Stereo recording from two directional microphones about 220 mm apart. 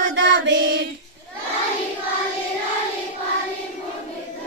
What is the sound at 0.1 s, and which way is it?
Child singing, 55° right (ahead or behind).